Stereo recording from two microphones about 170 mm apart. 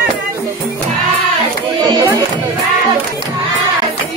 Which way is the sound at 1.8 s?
20° right (ahead or behind).